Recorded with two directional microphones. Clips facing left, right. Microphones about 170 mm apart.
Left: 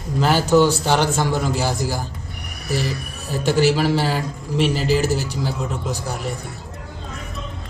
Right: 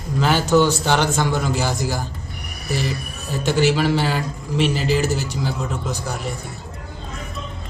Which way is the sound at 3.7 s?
5° left (ahead or behind).